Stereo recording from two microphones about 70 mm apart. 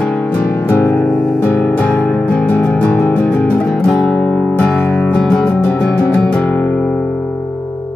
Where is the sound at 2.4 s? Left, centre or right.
Left.